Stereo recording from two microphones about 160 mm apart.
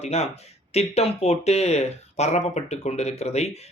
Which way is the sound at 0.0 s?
40° left (ahead or behind).